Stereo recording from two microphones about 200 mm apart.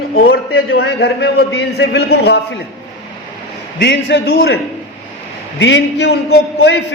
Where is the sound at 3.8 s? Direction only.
60° left (ahead or behind).